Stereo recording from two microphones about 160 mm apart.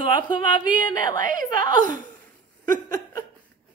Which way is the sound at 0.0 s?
30° left (ahead or behind).